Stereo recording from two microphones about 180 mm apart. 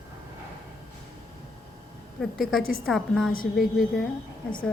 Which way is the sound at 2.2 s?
Centre (ahead or behind).